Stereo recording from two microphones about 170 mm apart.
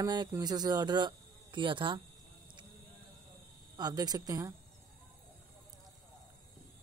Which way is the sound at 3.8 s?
25° right (ahead or behind).